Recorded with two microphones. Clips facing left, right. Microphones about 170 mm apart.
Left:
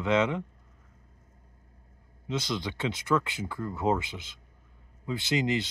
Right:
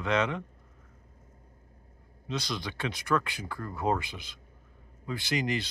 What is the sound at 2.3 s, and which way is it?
Speech, 20° left (ahead or behind).